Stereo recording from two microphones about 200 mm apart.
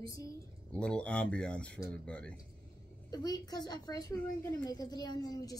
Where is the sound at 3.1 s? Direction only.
20° left (ahead or behind).